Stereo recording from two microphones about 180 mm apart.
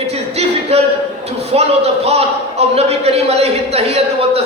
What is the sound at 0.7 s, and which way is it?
A man's voice, 35° right (ahead or behind).